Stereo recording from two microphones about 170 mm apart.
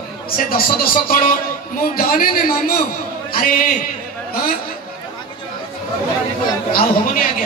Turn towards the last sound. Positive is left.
turn(degrees=55)  # may be behind; listen again after turning